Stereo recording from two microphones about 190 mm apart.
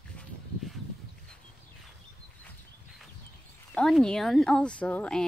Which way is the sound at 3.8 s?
5° left (ahead or behind).